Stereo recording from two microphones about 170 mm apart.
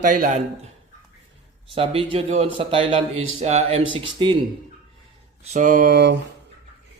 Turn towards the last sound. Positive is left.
turn(degrees=-75)  # may be behind; listen again after turning